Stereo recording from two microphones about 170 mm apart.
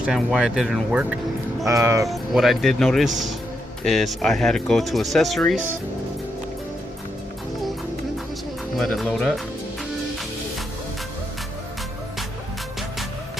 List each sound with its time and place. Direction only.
0.0 s speech: 5° right (ahead or behind)
1.6 s speech: 20° right (ahead or behind)
2.0 s speech: centre (ahead or behind)
8.7 s speech: centre (ahead or behind)